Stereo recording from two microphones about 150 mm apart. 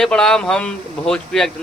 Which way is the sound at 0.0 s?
5° left (ahead or behind).